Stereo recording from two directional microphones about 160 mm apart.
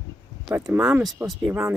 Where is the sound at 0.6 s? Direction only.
5° right (ahead or behind).